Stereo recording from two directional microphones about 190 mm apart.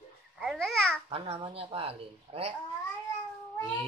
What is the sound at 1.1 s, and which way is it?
Speech, 30° right (ahead or behind).